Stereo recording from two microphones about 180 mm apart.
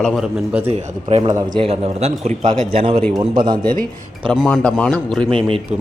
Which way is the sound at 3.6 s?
50° right (ahead or behind).